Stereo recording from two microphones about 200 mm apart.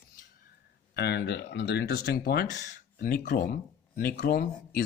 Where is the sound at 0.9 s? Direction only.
55° left (ahead or behind).